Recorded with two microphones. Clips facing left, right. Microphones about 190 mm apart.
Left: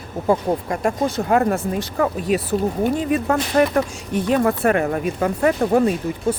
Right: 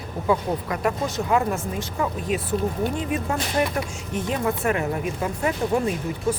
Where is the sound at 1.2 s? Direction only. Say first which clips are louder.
Left 4 dB; 60° left (ahead or behind).